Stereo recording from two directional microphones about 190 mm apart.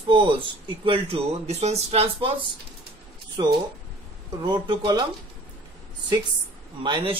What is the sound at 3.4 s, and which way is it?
Speech, 20° right (ahead or behind).